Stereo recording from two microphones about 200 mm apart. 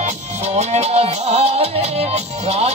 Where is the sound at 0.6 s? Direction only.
35° right (ahead or behind).